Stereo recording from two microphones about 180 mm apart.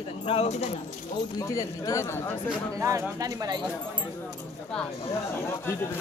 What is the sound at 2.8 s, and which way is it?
Speech, 20° right (ahead or behind).